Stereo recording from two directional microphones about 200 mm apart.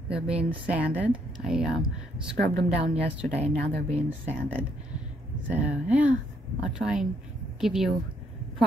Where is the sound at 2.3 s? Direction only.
55° right (ahead or behind).